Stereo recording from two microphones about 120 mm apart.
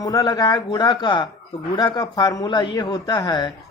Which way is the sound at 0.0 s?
30° left (ahead or behind).